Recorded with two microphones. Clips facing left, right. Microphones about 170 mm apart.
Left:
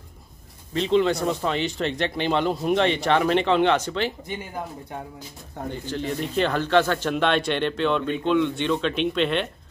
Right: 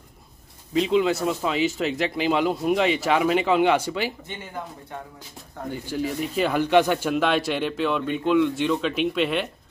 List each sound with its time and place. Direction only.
0.7 s speech: 5° right (ahead or behind)
5.7 s speech: 10° right (ahead or behind)